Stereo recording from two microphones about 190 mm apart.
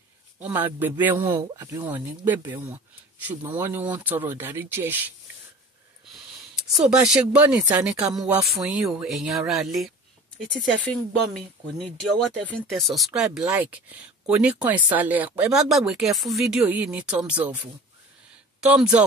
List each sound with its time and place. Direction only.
0.4 s speech: 10° right (ahead or behind)
6.1 s speech: centre (ahead or behind)
18.6 s speech: 5° right (ahead or behind)